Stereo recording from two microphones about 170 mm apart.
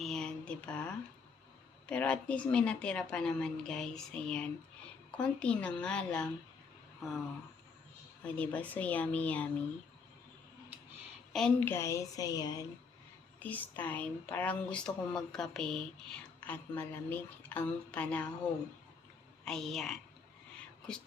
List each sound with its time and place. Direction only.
0.0 s a sound: 5° left (ahead or behind)
1.9 s a woman's voice: 5° left (ahead or behind)
8.2 s speech: 10° left (ahead or behind)
11.3 s speech: 5° left (ahead or behind); by 12.6 s 20° left (ahead or behind)
13.4 s speech: 10° left (ahead or behind)
19.5 s a woman's voice: centre (ahead or behind)